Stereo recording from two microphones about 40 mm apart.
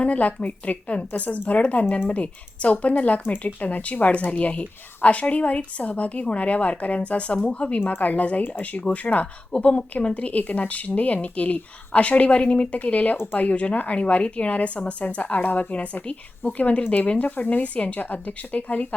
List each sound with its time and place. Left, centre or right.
0.0 s a woman's voice: left
17.7 s a woman's voice: left
18.0 s speech: left